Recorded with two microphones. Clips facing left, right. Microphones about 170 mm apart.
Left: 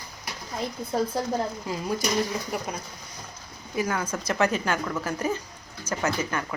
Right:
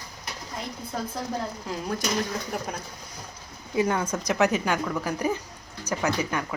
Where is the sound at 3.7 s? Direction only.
20° right (ahead or behind).